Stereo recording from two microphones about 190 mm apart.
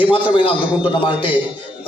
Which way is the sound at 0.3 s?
25° left (ahead or behind).